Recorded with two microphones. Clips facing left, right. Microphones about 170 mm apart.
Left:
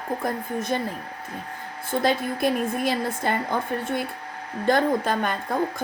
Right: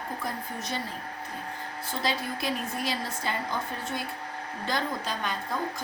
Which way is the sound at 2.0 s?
50° left (ahead or behind).